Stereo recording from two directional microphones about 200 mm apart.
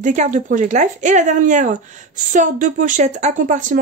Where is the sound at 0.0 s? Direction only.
40° right (ahead or behind).